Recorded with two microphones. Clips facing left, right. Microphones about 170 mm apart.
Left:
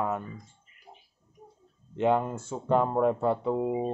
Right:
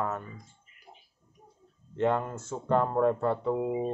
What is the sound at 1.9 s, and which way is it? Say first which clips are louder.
Speech: left 2 dB; 15° left (ahead or behind).